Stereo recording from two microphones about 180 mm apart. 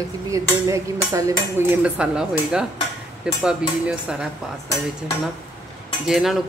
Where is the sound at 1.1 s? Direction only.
20° right (ahead or behind).